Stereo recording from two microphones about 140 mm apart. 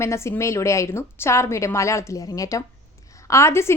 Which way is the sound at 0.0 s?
20° left (ahead or behind).